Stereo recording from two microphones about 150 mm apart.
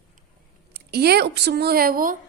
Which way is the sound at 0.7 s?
90° right.